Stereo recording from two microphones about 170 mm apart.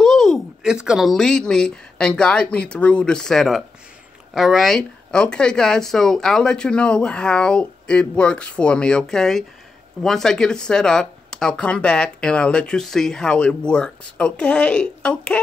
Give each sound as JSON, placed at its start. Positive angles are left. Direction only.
{"t": 0.0, "sound": "speech", "side_deg": 5}